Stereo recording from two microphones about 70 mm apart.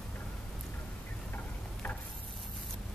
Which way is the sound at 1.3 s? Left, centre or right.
Left.